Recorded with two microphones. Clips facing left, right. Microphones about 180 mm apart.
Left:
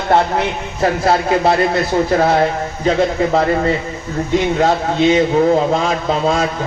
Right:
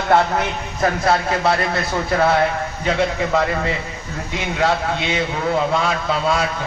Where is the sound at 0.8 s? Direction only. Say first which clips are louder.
Left 3 dB; 30° left (ahead or behind).